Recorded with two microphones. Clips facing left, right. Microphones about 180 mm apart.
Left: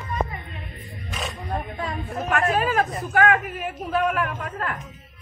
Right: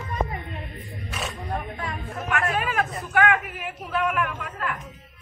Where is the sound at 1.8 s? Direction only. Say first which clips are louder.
Left 3 dB; 30° left (ahead or behind).